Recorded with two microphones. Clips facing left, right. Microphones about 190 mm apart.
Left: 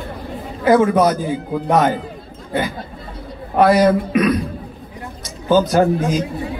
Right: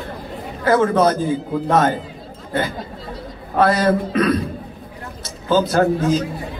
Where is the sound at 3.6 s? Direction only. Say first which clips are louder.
Left 3 dB; 20° left (ahead or behind).